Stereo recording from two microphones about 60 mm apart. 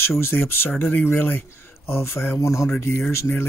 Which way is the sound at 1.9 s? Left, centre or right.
Left.